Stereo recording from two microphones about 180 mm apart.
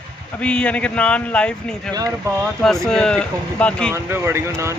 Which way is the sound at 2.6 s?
Centre (ahead or behind).